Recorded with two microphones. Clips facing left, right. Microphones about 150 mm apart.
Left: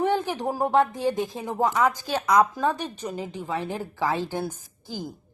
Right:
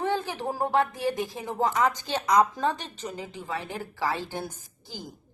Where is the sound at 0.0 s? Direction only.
15° left (ahead or behind).